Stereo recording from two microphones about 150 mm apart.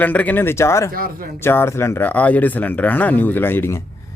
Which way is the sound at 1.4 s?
15° left (ahead or behind).